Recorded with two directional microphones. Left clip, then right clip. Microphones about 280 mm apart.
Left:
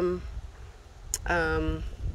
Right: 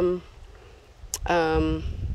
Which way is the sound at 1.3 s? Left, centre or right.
Centre.